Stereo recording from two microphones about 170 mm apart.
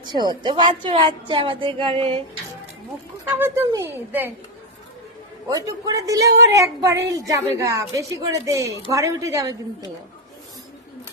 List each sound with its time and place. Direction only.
0.0 s a woman's voice: 25° right (ahead or behind)
3.2 s a woman's voice: 15° right (ahead or behind)
5.5 s a woman's voice: 20° right (ahead or behind)